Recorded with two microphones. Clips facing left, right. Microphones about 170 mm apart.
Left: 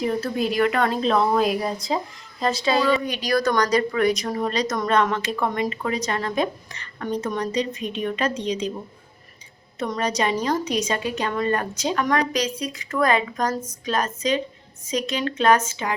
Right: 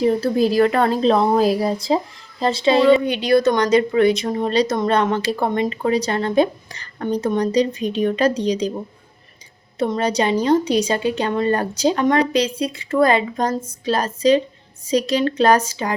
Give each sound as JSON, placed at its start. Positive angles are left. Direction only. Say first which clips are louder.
{"t": 0.0, "sound": "speech", "louder": "right 7 dB", "side_deg": -35}
{"t": 9.7, "sound": "speech", "louder": "right 5 dB", "side_deg": -30}